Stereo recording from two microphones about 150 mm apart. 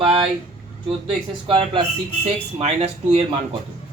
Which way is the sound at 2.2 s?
45° right (ahead or behind).